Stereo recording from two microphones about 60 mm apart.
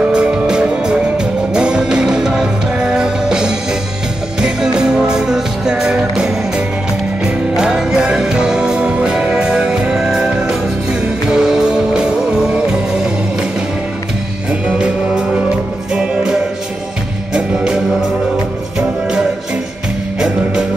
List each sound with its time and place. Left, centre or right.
0.1 s music: centre
14.5 s music: centre
18.8 s music: centre